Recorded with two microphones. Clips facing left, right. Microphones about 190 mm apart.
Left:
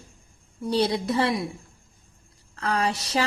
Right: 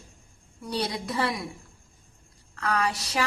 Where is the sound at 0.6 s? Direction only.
25° left (ahead or behind).